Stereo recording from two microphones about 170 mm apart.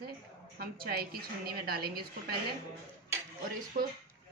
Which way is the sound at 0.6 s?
60° right (ahead or behind).